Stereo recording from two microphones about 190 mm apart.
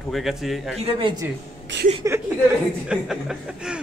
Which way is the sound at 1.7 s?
70° right (ahead or behind).